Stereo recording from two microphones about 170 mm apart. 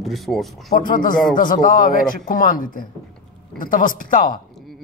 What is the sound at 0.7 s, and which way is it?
Speech, 50° left (ahead or behind).